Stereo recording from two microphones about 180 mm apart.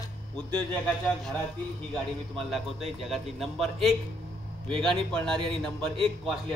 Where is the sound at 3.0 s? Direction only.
Centre (ahead or behind).